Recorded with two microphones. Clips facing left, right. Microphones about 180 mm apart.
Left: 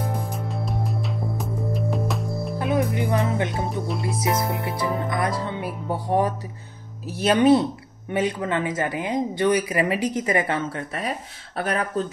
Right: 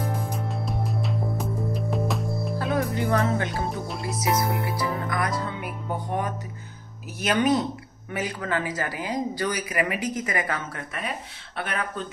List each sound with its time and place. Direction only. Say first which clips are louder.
0.0 s music: left 1 dB; centre (ahead or behind)
2.6 s speech: left 3 dB; 15° left (ahead or behind)
3.7 s music: left 4 dB; centre (ahead or behind)
4.0 s speech: right 1 dB; 25° left (ahead or behind)